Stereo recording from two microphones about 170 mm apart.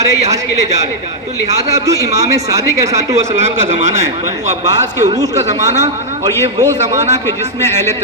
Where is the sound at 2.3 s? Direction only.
20° right (ahead or behind).